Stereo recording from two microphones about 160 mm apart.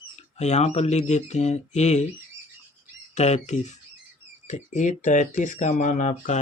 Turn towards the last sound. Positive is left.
turn(degrees=50)  # may be behind; listen again after turning